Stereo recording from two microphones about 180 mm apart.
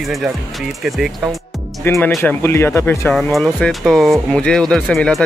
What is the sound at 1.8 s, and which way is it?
Speech, 15° left (ahead or behind).